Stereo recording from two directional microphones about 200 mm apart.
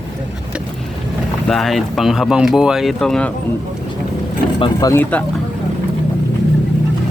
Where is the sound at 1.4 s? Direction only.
Centre (ahead or behind).